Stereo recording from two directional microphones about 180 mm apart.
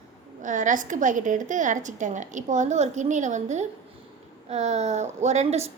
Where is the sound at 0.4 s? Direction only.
45° right (ahead or behind).